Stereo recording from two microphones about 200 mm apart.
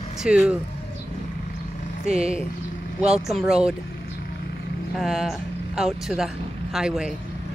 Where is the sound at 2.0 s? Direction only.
5° right (ahead or behind).